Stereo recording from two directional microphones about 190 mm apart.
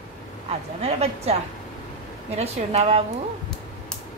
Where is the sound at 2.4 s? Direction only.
35° right (ahead or behind).